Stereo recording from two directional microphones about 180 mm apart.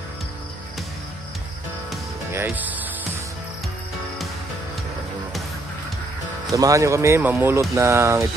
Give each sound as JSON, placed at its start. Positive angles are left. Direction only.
{"t": 2.3, "sound": "speech", "side_deg": -10}
{"t": 6.5, "sound": "speech", "side_deg": -20}